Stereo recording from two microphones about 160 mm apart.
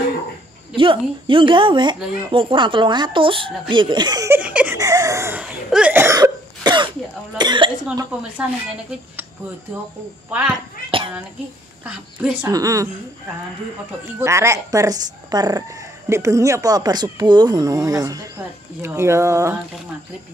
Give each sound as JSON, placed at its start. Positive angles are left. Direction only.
{"t": 0.7, "sound": "speech", "side_deg": -35}
{"t": 4.3, "sound": "speech", "side_deg": -10}
{"t": 4.7, "sound": "cough", "side_deg": -20}
{"t": 7.3, "sound": "speech", "side_deg": -30}
{"t": 8.4, "sound": "speech", "side_deg": -5}
{"t": 10.9, "sound": "a sound", "side_deg": -35}
{"t": 11.8, "sound": "speech", "side_deg": -10}
{"t": 12.4, "sound": "speech", "side_deg": -20}
{"t": 14.2, "sound": "speech", "side_deg": -15}